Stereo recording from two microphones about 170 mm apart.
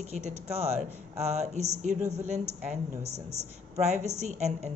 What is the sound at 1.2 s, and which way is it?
Speech, 40° right (ahead or behind).